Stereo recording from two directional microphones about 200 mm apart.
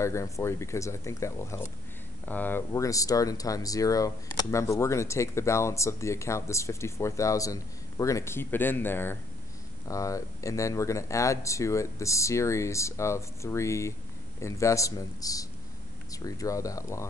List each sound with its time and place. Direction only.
0.0 s speech: 15° left (ahead or behind)